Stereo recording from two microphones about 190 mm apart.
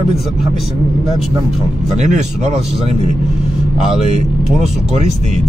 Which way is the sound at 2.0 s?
35° right (ahead or behind).